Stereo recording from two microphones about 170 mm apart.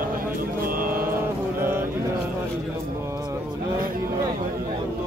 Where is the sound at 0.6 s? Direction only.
55° right (ahead or behind).